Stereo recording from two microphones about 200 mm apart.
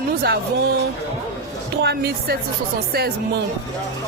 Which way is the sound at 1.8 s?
55° right (ahead or behind).